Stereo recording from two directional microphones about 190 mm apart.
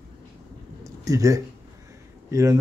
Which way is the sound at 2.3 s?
15° right (ahead or behind).